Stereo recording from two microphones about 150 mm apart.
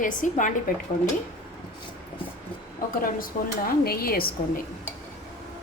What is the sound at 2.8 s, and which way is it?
Speech, 70° left (ahead or behind).